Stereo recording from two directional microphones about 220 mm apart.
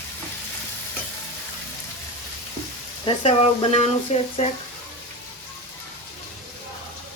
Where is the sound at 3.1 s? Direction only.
25° left (ahead or behind).